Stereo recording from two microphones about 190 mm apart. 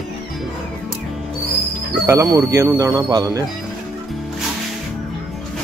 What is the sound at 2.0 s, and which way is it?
Speech, 15° right (ahead or behind).